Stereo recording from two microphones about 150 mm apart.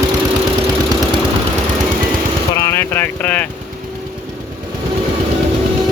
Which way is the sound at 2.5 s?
15° left (ahead or behind).